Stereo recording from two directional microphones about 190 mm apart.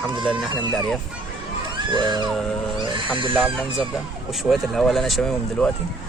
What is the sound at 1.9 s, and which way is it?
Music, 25° right (ahead or behind).